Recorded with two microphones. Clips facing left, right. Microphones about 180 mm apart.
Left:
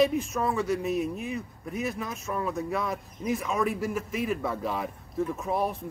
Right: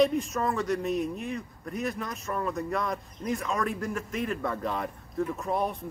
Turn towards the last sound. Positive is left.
turn(degrees=5)  # may be behind; listen again after turning